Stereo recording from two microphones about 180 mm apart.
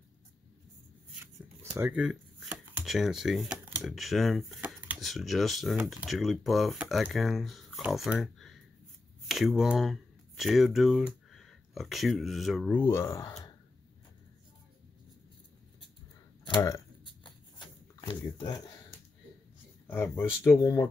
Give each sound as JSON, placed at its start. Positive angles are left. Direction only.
{"t": 1.6, "sound": "speech", "side_deg": -10}
{"t": 12.8, "sound": "speech", "side_deg": 15}
{"t": 16.4, "sound": "speech", "side_deg": 20}
{"t": 18.0, "sound": "a sound", "side_deg": 25}
{"t": 19.9, "sound": "speech", "side_deg": 15}